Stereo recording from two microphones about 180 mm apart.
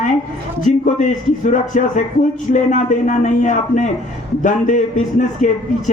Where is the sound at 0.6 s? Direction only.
45° left (ahead or behind).